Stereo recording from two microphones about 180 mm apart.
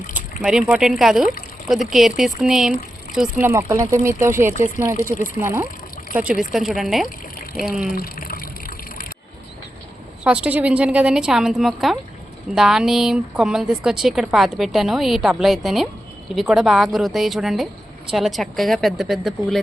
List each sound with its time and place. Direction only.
0.4 s a woman's voice: centre (ahead or behind)
7.9 s water: 55° left (ahead or behind)
10.2 s a woman's voice: 5° right (ahead or behind)